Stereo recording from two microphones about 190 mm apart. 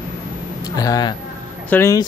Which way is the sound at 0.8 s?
20° left (ahead or behind).